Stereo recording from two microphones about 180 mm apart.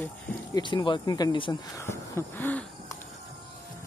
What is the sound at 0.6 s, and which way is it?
Speech, 25° left (ahead or behind).